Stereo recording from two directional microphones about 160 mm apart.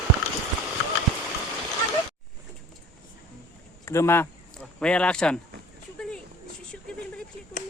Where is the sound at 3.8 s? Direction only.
15° left (ahead or behind).